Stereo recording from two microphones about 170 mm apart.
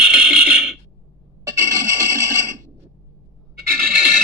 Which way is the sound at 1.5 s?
15° right (ahead or behind).